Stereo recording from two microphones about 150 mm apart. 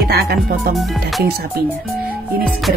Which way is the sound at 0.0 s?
90° right.